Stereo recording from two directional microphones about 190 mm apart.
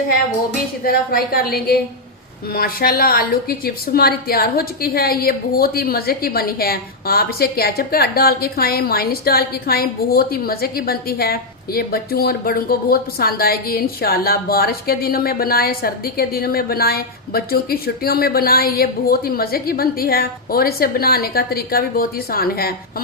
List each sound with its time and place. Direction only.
0.9 s a woman's voice: 50° left (ahead or behind)